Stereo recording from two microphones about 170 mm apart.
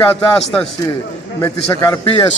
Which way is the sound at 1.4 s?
20° left (ahead or behind).